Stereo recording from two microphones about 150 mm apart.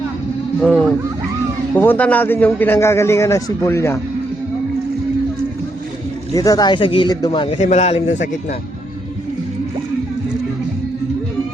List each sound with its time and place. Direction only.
0.6 s a man's voice: 5° left (ahead or behind)
6.3 s speech: 25° left (ahead or behind)
7.6 s a man's voice: 50° left (ahead or behind)